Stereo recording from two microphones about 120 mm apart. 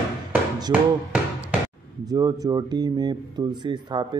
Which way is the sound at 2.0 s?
30° right (ahead or behind).